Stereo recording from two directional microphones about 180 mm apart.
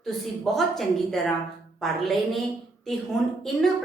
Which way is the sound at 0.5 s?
Centre (ahead or behind).